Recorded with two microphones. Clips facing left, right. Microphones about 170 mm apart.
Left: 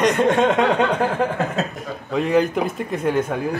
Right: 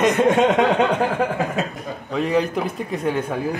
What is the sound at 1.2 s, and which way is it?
Chuckle, 15° right (ahead or behind).